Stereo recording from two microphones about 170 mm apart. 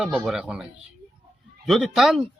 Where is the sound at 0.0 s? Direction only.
5° right (ahead or behind).